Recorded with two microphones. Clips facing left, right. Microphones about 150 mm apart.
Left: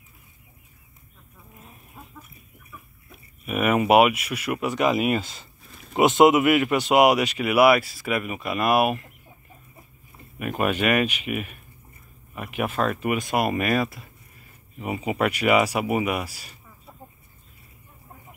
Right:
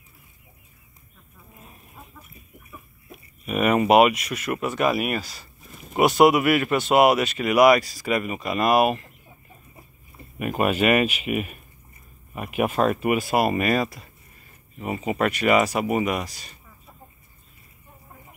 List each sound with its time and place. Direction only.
3.4 s speech: 5° left (ahead or behind); by 5.5 s 20° left (ahead or behind)
5.7 s a sound: 5° right (ahead or behind)
5.9 s speech: 20° left (ahead or behind); by 9.1 s centre (ahead or behind)
10.4 s speech: 5° right (ahead or behind)